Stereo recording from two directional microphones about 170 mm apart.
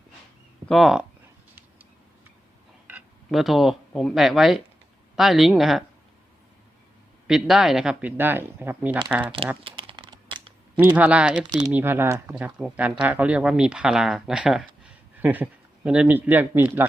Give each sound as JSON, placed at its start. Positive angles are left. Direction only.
{"t": 0.7, "sound": "speech", "side_deg": 0}
{"t": 2.8, "sound": "speech", "side_deg": -5}
{"t": 7.3, "sound": "speech", "side_deg": 0}
{"t": 9.2, "sound": "speech", "side_deg": -30}
{"t": 9.7, "sound": "a sound", "side_deg": -30}
{"t": 10.8, "sound": "speech", "side_deg": -10}
{"t": 11.4, "sound": "speech", "side_deg": -20}